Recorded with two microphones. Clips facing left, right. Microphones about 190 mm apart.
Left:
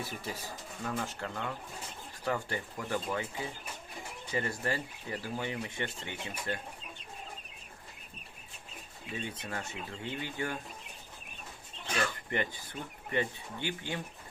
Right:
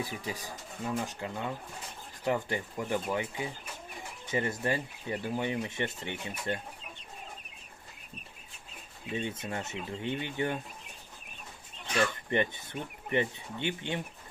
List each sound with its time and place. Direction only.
0.0 s speech: 15° right (ahead or behind)
9.1 s speech: 25° right (ahead or behind)
12.3 s speech: 20° right (ahead or behind)